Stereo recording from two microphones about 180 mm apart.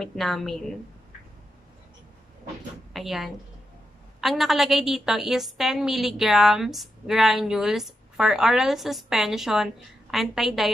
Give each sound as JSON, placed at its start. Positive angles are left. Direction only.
{"t": 0.0, "sound": "a woman's voice", "side_deg": 0}
{"t": 2.9, "sound": "a woman's voice", "side_deg": 0}